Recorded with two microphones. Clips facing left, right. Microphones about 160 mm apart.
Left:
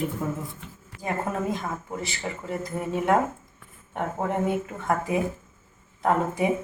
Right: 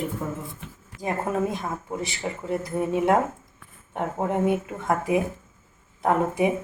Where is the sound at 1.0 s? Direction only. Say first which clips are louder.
Right 3 dB; 15° right (ahead or behind).